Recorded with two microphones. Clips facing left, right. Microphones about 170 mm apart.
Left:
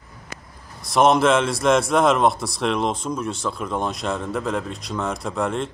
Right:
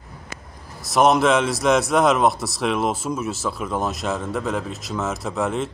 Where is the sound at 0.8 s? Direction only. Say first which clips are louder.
Even; centre (ahead or behind).